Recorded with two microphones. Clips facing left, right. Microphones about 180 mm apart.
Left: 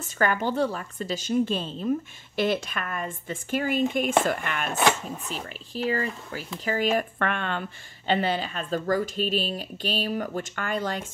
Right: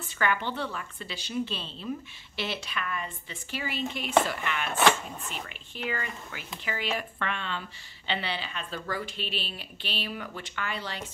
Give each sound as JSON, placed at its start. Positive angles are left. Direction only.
{"t": 0.0, "sound": "a woman's voice", "side_deg": 40}
{"t": 5.3, "sound": "a woman's voice", "side_deg": 35}